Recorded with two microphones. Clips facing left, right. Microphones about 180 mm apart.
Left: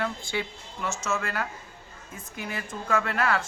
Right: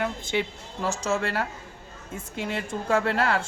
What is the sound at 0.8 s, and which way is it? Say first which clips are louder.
Speech: right 4 dB; 35° right (ahead or behind).